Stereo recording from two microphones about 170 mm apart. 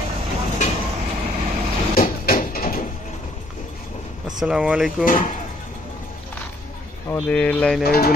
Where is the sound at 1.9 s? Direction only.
60° left (ahead or behind).